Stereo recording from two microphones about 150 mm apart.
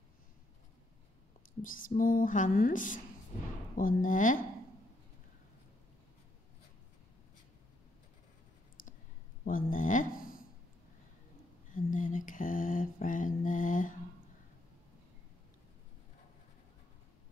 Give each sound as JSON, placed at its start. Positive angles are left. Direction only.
{"t": 1.6, "sound": "speech", "side_deg": 65}
{"t": 8.8, "sound": "clicking", "side_deg": 65}
{"t": 9.4, "sound": "speech", "side_deg": 60}
{"t": 11.7, "sound": "mantra", "side_deg": 60}